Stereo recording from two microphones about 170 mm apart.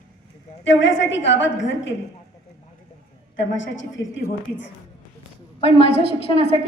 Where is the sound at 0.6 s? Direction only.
90° left.